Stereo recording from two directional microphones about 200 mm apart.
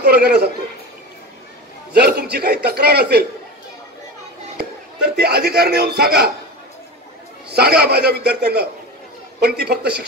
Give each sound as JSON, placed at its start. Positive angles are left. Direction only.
{"t": 0.0, "sound": "a man's voice", "side_deg": -50}
{"t": 2.0, "sound": "a man's voice", "side_deg": -50}
{"t": 4.6, "sound": "a man's voice", "side_deg": -55}
{"t": 7.5, "sound": "a man's voice", "side_deg": -50}